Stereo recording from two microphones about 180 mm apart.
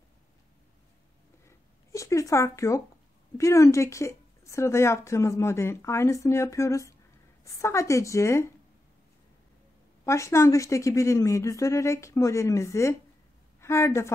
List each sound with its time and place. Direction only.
1.9 s a woman's voice: 15° left (ahead or behind)
10.0 s a woman's voice: 15° left (ahead or behind)